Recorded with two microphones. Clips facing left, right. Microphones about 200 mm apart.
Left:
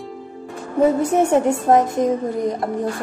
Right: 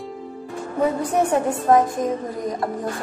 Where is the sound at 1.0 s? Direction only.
25° left (ahead or behind).